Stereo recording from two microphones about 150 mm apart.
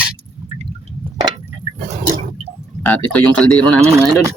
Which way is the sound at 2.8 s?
10° left (ahead or behind).